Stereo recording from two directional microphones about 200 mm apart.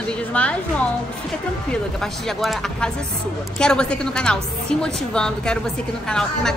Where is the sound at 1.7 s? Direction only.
Centre (ahead or behind).